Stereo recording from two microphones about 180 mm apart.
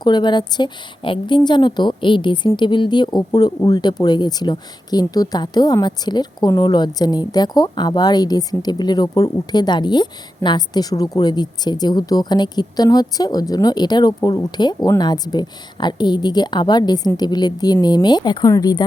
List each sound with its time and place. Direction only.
0.0 s a woman's voice: 25° left (ahead or behind)